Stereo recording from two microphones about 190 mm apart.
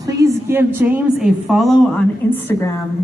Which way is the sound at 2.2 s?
10° left (ahead or behind).